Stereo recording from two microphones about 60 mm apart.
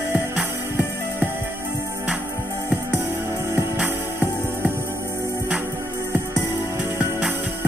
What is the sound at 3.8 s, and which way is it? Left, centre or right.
Music, right.